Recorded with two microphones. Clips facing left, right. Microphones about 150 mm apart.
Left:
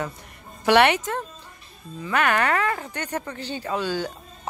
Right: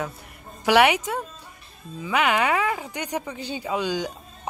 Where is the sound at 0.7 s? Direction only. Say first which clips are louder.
Even; 10° right (ahead or behind).